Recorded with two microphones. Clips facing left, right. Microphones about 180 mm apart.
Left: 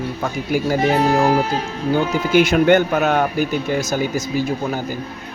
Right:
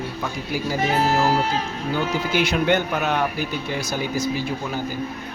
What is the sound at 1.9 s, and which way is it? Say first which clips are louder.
Speech: left 7 dB; 50° left (ahead or behind).